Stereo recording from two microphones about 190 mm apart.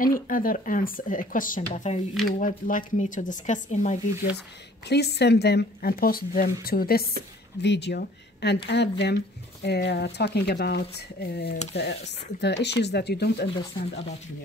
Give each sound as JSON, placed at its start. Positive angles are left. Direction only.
{"t": 0.0, "sound": "speech", "side_deg": 45}
{"t": 4.8, "sound": "speech", "side_deg": 60}
{"t": 7.6, "sound": "speech", "side_deg": 65}